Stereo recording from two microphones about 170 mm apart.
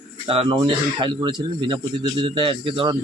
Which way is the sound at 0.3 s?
35° right (ahead or behind).